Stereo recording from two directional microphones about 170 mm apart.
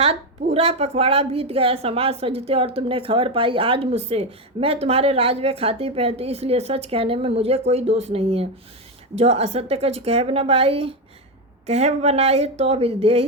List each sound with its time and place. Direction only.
0.0 s a woman's voice: 35° right (ahead or behind)